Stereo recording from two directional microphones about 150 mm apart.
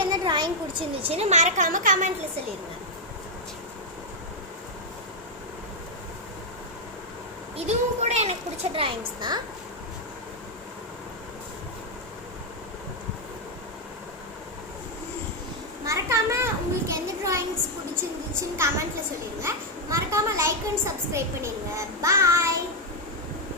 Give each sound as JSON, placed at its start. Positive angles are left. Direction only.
{"t": 0.1, "sound": "a woman's voice", "side_deg": -30}
{"t": 7.5, "sound": "a woman's voice", "side_deg": -50}
{"t": 15.9, "sound": "a sound", "side_deg": -20}
{"t": 19.4, "sound": "a child's voice", "side_deg": -20}